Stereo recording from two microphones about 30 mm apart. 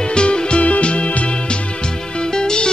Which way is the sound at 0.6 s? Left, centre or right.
Left.